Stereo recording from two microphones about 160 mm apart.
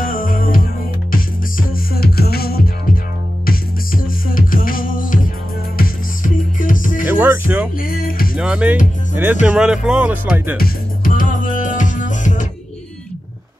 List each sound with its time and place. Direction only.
0.0 s music: 60° left (ahead or behind)
1.7 s music: 65° left (ahead or behind)
7.1 s music: 10° right (ahead or behind)
7.7 s music: 65° left (ahead or behind)
8.4 s speech: 5° right (ahead or behind)
10.6 s music: 60° left (ahead or behind)